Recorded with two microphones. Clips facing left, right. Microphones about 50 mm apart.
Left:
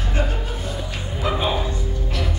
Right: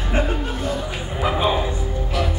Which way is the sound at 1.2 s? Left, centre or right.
Centre.